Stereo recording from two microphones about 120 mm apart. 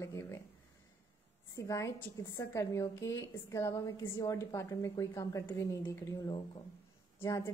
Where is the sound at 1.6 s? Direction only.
25° left (ahead or behind).